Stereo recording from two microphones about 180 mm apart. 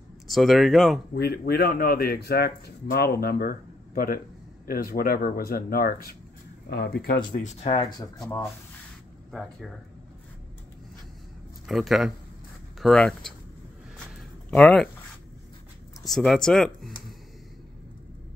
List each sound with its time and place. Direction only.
0.3 s speech: centre (ahead or behind)
1.1 s speech: 60° left (ahead or behind)
7.4 s speech: 35° left (ahead or behind)
9.3 s speech: centre (ahead or behind)
11.6 s speech: centre (ahead or behind)
13.9 s a sound: 5° left (ahead or behind)
16.0 s speech: centre (ahead or behind)